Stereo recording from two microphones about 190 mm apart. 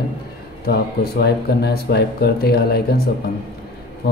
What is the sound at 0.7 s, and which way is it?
Speech, 55° left (ahead or behind).